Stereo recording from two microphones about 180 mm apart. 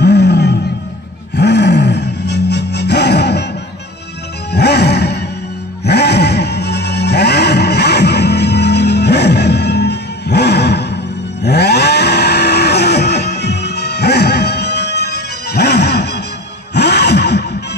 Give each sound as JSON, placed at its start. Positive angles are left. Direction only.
{"t": 0.0, "sound": "roaring cats", "side_deg": 70}
{"t": 1.3, "sound": "music", "side_deg": 70}
{"t": 4.5, "sound": "music", "side_deg": 65}
{"t": 11.4, "sound": "cattle", "side_deg": 65}
{"t": 16.7, "sound": "a sound", "side_deg": 70}